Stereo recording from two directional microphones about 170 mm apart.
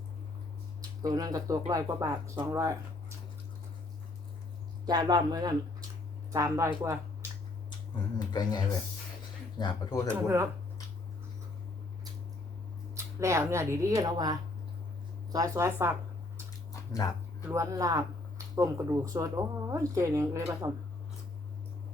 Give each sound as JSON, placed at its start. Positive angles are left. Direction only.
{"t": 1.0, "sound": "speech", "side_deg": -20}
{"t": 4.9, "sound": "speech", "side_deg": -25}
{"t": 8.3, "sound": "speech", "side_deg": 25}
{"t": 10.1, "sound": "speech", "side_deg": -15}
{"t": 12.9, "sound": "speech", "side_deg": -15}
{"t": 17.5, "sound": "speech", "side_deg": -20}